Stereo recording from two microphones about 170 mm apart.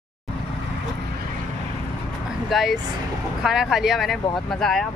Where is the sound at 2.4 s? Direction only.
Centre (ahead or behind).